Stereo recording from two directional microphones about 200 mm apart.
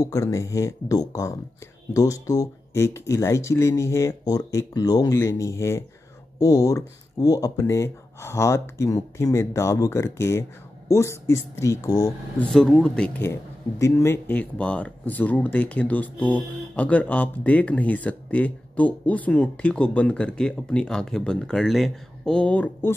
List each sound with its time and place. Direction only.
0.0 s speech: 15° left (ahead or behind)
12.4 s speech: 5° left (ahead or behind)